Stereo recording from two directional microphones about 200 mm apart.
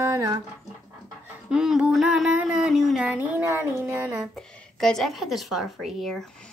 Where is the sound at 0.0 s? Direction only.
15° right (ahead or behind).